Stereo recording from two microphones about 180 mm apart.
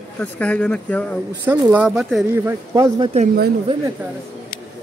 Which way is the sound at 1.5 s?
10° right (ahead or behind).